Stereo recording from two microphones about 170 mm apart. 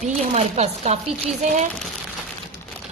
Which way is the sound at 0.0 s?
40° right (ahead or behind).